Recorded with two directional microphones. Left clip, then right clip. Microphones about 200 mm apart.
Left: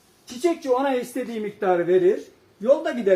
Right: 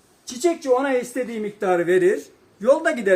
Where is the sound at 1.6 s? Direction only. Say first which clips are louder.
Right 1 dB; 25° right (ahead or behind).